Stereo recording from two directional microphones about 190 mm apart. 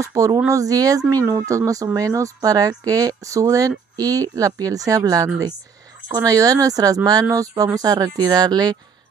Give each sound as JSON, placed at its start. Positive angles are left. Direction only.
{"t": 0.0, "sound": "speech", "side_deg": -15}